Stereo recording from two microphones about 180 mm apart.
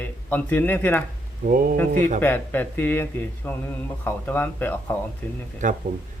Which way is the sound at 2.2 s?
10° left (ahead or behind).